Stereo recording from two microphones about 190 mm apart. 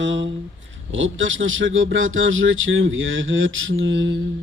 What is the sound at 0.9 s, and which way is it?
Speech, 90° right.